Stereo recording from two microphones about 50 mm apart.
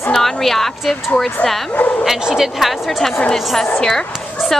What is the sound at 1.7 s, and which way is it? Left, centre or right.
Speech, left.